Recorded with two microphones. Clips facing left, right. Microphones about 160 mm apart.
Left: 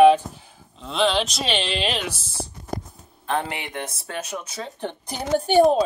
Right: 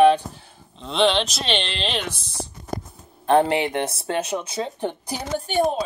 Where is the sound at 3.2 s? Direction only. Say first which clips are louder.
Right 9 dB; 35° right (ahead or behind); by 5.0 s 15° right (ahead or behind).